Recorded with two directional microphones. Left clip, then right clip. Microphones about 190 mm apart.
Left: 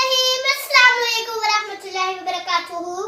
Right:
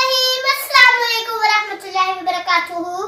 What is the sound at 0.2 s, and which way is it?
Child singing, 15° left (ahead or behind).